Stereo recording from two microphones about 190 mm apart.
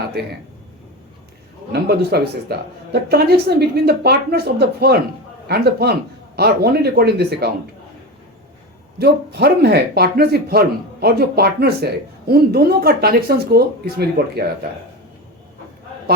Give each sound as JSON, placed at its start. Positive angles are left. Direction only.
{"t": 1.7, "sound": "speech", "side_deg": -55}
{"t": 9.0, "sound": "speech", "side_deg": -55}